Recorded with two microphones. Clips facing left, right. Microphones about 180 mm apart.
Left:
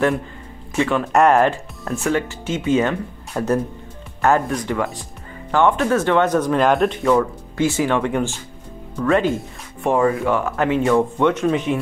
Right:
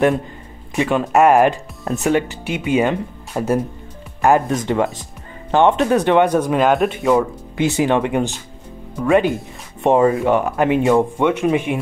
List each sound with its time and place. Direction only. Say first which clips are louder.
0.7 s speech: right 2 dB; 15° right (ahead or behind)
7.1 s speech: right 3 dB; 15° right (ahead or behind)